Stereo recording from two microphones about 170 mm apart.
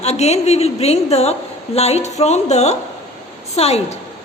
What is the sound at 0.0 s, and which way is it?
A woman's voice, 40° left (ahead or behind).